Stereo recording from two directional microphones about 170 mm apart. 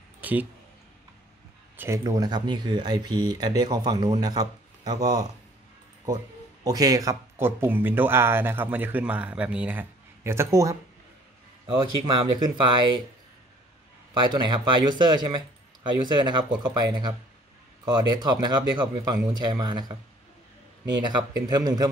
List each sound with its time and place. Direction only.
0.2 s a sound: 10° right (ahead or behind)
1.8 s speech: 20° right (ahead or behind)
6.6 s speech: 20° right (ahead or behind)
11.6 s speech: 30° right (ahead or behind)
14.3 s speech: 25° right (ahead or behind)
21.0 s speech: 25° right (ahead or behind)